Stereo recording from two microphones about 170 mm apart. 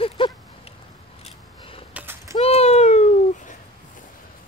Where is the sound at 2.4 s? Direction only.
35° left (ahead or behind).